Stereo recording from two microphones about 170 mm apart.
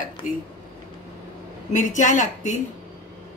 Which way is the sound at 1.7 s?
45° left (ahead or behind).